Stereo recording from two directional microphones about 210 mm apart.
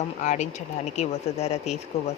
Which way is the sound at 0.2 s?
35° left (ahead or behind).